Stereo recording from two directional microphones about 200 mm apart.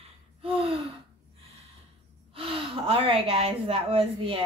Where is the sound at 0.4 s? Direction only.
30° right (ahead or behind).